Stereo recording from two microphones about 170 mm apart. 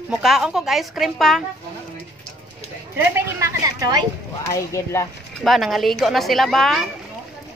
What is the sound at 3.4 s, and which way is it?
Speech, 20° right (ahead or behind).